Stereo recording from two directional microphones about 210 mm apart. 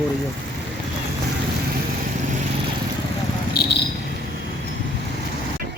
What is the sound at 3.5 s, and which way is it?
Cricket, 55° left (ahead or behind).